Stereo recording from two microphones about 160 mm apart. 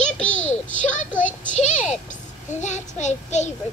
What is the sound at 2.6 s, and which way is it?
Child singing, 45° left (ahead or behind).